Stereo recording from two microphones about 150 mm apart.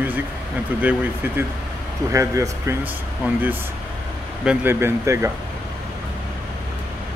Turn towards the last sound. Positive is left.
turn(degrees=-20)  # may be behind; listen again after turning